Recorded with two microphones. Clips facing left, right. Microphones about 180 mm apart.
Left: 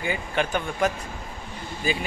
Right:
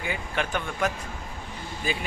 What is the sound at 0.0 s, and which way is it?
A man's voice, centre (ahead or behind).